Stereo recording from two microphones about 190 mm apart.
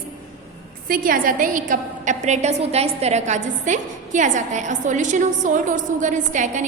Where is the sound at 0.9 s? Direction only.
45° right (ahead or behind).